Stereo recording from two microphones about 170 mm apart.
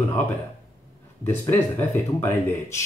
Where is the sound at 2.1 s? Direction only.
15° left (ahead or behind).